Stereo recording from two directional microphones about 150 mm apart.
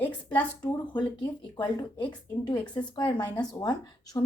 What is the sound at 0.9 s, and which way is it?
Speech, 30° left (ahead or behind).